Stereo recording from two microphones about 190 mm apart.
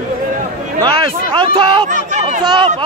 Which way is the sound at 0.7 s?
25° right (ahead or behind).